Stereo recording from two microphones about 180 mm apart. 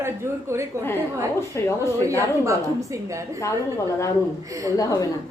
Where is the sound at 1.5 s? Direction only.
15° left (ahead or behind).